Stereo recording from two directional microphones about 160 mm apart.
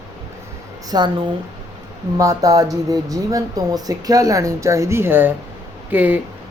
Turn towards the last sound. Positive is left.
turn(degrees=-10)  # may be behind; listen again after turning